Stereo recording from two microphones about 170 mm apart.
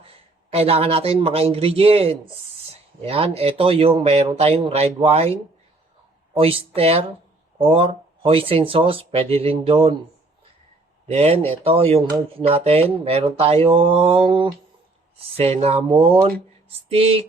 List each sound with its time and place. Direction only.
0.5 s speech: 35° right (ahead or behind)
11.1 s speech: 35° right (ahead or behind)